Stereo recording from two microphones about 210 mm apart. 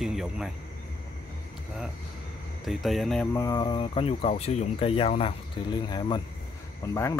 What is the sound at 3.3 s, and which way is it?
Speech, 15° left (ahead or behind).